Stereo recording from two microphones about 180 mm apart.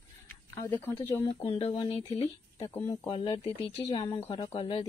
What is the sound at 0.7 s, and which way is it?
Speech, 10° left (ahead or behind).